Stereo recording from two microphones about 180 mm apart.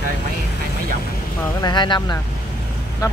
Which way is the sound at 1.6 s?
25° left (ahead or behind).